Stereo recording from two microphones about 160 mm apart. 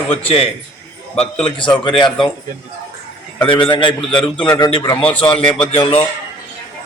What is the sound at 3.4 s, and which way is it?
A man's voice, 30° left (ahead or behind).